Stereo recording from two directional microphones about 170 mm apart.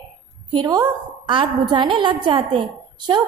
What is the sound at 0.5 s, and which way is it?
A woman's voice, 25° right (ahead or behind).